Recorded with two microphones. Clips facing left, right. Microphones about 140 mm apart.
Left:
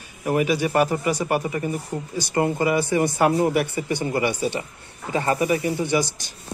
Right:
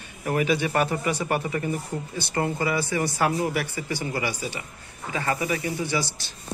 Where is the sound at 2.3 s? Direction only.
20° left (ahead or behind).